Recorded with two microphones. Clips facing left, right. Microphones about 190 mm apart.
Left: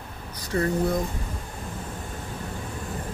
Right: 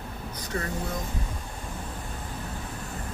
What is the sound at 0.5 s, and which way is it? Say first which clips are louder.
Speech: left 8 dB; 35° left (ahead or behind).